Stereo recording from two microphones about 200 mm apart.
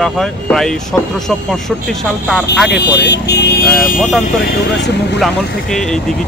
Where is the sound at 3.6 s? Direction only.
Centre (ahead or behind).